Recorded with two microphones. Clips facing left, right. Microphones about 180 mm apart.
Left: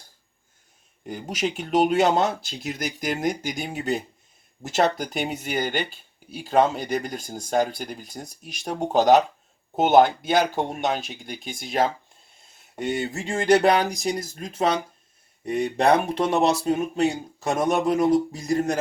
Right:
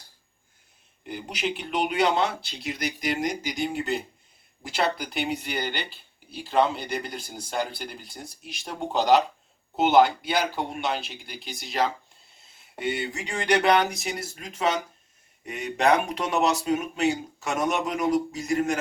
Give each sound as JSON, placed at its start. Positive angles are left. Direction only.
{"t": 1.0, "sound": "speech", "side_deg": 45}